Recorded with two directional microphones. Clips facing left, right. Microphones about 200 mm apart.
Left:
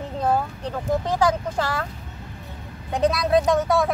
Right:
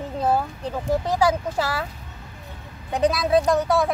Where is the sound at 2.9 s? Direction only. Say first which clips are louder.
Even; centre (ahead or behind).